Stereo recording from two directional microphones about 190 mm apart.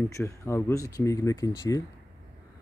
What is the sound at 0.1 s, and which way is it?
Speech, 15° left (ahead or behind).